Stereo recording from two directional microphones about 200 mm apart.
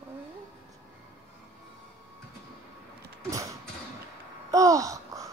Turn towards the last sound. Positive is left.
turn(degrees=-15)  # may be behind; listen again after turning